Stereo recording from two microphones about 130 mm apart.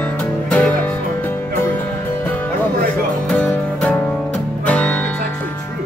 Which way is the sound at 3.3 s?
10° left (ahead or behind).